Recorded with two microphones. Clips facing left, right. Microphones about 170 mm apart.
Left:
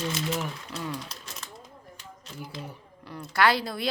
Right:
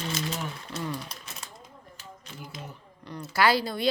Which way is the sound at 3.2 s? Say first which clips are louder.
Even; centre (ahead or behind).